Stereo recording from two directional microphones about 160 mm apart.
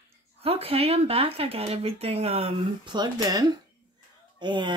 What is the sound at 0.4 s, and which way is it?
Speech, 40° right (ahead or behind).